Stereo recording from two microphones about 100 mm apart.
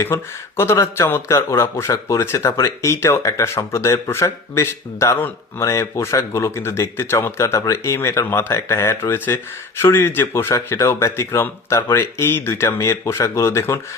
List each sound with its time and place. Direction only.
0.0 s speech: 25° left (ahead or behind)